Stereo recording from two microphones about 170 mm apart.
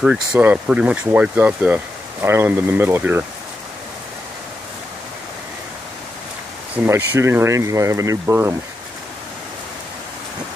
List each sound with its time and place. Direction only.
0.0 s speech: 5° right (ahead or behind)
6.9 s speech: 15° right (ahead or behind)